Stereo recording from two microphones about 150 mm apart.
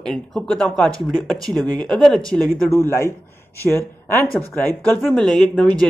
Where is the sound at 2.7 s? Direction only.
20° left (ahead or behind).